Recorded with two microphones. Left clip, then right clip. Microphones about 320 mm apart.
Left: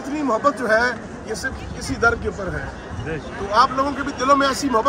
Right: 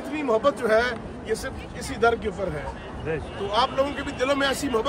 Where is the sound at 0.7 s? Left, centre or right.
Centre.